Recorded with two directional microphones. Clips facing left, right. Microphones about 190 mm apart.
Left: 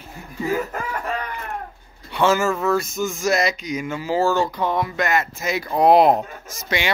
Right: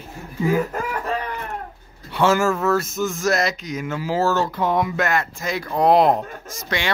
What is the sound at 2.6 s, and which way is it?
Speech, 5° right (ahead or behind).